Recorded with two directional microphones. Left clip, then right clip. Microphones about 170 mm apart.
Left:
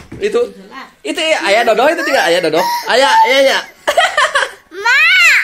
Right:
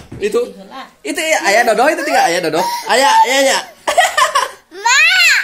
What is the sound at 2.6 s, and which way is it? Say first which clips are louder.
Speech: left 3 dB; centre (ahead or behind).